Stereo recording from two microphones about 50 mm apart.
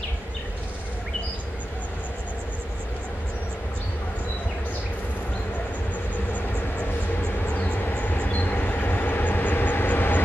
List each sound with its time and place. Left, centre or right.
7.5 s train: left